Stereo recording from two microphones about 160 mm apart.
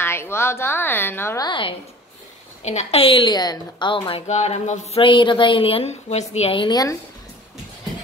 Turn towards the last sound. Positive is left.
turn(degrees=25)  # may be behind; listen again after turning